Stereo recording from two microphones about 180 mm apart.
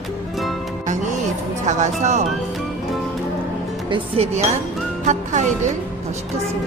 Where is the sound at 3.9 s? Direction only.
35° right (ahead or behind).